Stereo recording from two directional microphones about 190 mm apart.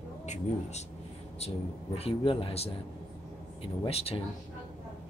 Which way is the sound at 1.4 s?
30° left (ahead or behind).